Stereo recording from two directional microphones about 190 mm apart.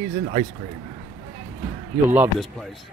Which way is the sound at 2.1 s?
10° right (ahead or behind).